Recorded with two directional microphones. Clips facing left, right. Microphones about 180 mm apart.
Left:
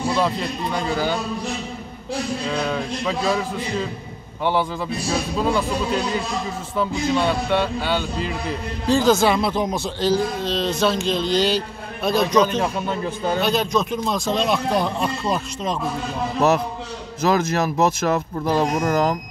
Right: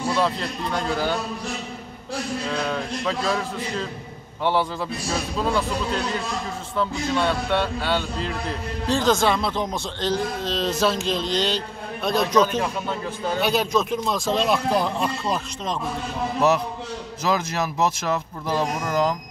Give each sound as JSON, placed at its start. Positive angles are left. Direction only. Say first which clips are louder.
{"t": 0.1, "sound": "a man's voice", "louder": "even", "side_deg": 0}
{"t": 2.5, "sound": "a man's voice", "louder": "left 2 dB", "side_deg": 5}
{"t": 5.1, "sound": "a man's voice", "louder": "left 2 dB", "side_deg": 0}
{"t": 17.2, "sound": "speech", "louder": "left 5 dB", "side_deg": 50}